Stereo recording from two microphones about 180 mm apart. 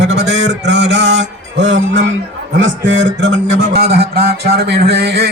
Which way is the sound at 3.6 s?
65° right (ahead or behind).